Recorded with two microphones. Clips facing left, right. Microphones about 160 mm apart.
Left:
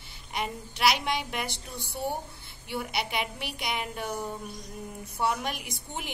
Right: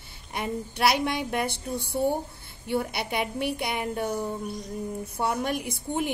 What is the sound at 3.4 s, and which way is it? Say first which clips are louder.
Speech: right 6 dB; 55° right (ahead or behind).